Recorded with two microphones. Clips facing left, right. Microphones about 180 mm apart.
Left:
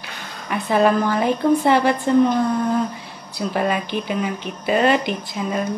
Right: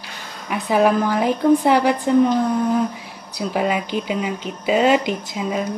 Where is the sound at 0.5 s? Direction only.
10° right (ahead or behind).